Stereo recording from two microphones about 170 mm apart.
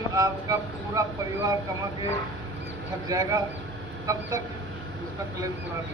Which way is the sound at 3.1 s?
20° right (ahead or behind).